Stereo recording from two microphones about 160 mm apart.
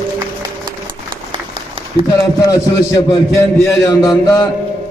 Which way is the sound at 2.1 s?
20° left (ahead or behind).